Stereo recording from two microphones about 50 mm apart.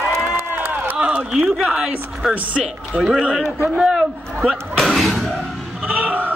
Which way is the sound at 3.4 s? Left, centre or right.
Left.